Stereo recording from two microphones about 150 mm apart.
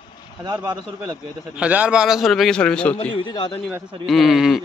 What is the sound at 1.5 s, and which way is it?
A man's voice, 10° right (ahead or behind).